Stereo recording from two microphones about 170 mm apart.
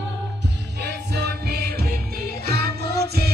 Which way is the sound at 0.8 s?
70° right (ahead or behind).